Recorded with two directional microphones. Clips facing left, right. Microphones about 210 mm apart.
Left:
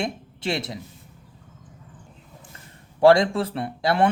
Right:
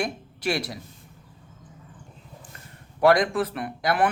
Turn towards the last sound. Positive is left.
turn(degrees=25)  # may be behind; listen again after turning